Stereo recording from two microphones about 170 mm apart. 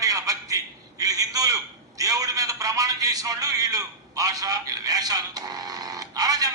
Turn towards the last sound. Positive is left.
turn(degrees=-20)  # may be behind; listen again after turning